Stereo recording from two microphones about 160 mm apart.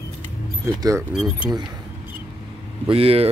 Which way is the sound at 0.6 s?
20° right (ahead or behind).